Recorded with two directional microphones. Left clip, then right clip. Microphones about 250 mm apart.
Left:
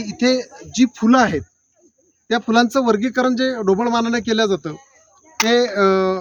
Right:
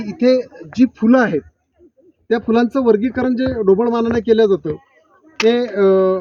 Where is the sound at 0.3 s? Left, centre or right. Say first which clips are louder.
Right 5 dB; centre.